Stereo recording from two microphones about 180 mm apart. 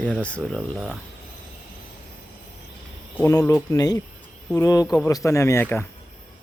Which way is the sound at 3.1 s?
15° left (ahead or behind).